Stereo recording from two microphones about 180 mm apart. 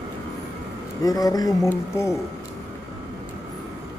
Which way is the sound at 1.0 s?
20° left (ahead or behind).